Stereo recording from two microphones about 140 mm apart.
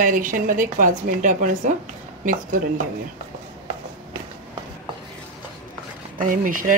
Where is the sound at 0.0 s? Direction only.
75° right (ahead or behind).